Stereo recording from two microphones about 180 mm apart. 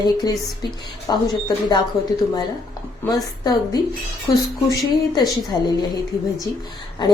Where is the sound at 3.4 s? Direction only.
20° left (ahead or behind).